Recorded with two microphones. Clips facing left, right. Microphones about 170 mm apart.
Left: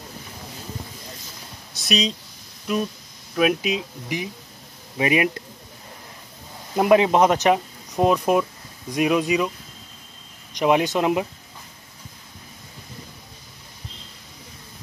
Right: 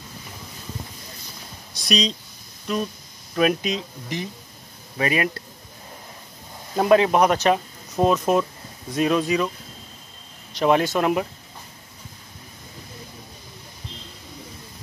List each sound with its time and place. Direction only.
1.9 s speech: 5° left (ahead or behind)
3.3 s speech: 5° left (ahead or behind)
6.7 s speech: 15° left (ahead or behind)
10.5 s speech: 15° left (ahead or behind)